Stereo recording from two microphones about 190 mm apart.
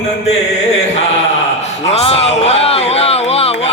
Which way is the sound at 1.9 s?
30° left (ahead or behind).